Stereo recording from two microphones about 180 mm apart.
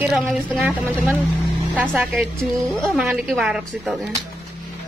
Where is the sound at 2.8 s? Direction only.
5° right (ahead or behind).